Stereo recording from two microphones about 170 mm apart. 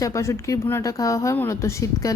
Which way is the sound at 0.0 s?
20° left (ahead or behind).